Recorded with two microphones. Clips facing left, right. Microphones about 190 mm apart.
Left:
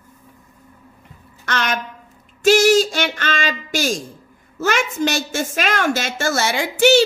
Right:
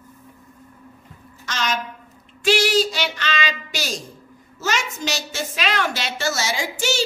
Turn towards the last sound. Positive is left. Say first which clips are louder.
# left 10 dB
turn(degrees=60)  # may be behind; listen again after turning